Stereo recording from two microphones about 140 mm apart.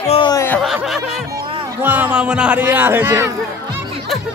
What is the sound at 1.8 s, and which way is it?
A man's voice, 15° right (ahead or behind).